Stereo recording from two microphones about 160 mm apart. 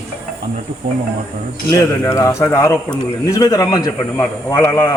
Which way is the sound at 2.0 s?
20° left (ahead or behind).